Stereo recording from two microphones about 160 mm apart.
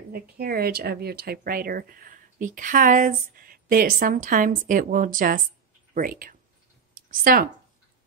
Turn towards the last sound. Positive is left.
turn(degrees=-60)  # may be behind; listen again after turning